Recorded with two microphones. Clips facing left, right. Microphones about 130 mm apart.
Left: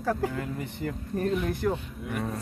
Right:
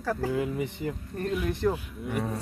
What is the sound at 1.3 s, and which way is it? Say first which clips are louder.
Speech: right 2 dB; centre (ahead or behind).